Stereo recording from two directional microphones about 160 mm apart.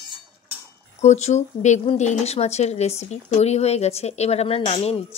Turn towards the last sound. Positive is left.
turn(degrees=40)  # may be behind; listen again after turning